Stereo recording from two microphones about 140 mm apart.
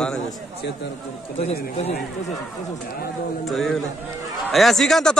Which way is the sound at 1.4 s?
50° left (ahead or behind).